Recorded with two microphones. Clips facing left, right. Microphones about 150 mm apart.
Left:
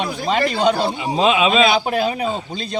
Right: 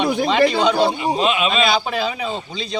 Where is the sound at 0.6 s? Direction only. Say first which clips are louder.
Right 1 dB; 45° left (ahead or behind).